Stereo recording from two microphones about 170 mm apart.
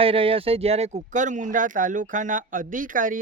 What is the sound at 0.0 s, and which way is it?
Speech, 35° right (ahead or behind).